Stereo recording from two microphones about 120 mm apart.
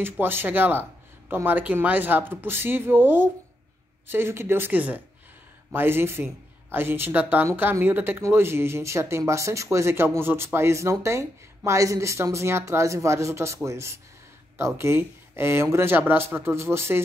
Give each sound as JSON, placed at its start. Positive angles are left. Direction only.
{"t": 0.0, "sound": "speech", "side_deg": -15}